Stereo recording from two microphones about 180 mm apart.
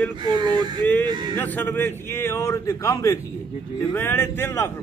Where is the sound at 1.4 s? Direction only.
10° left (ahead or behind).